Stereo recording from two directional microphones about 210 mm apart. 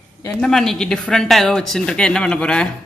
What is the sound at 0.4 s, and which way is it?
Speech, centre (ahead or behind).